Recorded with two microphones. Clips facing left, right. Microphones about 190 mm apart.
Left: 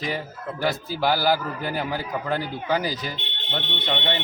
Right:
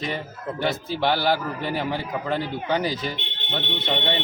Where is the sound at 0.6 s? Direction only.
Centre (ahead or behind).